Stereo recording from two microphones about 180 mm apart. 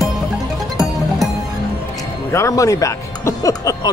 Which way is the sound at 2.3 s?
15° left (ahead or behind).